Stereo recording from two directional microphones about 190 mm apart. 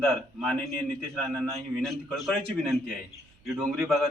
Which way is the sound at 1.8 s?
Centre (ahead or behind).